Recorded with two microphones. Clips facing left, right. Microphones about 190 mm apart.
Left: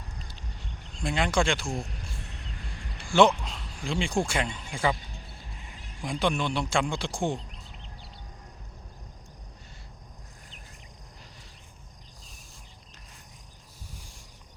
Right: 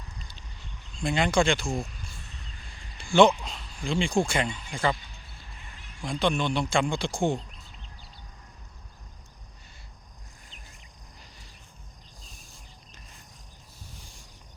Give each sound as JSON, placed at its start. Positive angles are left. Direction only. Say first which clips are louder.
{"t": 1.0, "sound": "speech", "louder": "right 2 dB", "side_deg": 0}
{"t": 1.9, "sound": "a sound", "louder": "left 4 dB", "side_deg": 60}
{"t": 3.1, "sound": "speech", "louder": "right 2 dB", "side_deg": 5}
{"t": 6.0, "sound": "speech", "louder": "right 1 dB", "side_deg": 10}